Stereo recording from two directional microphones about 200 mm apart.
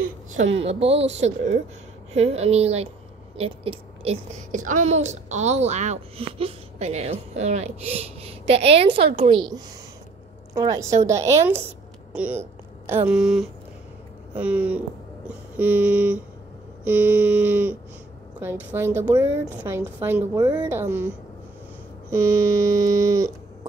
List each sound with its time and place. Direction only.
0.4 s a woman's voice: 30° right (ahead or behind)
10.5 s a woman's voice: 15° right (ahead or behind)
22.1 s a woman's voice: 15° right (ahead or behind)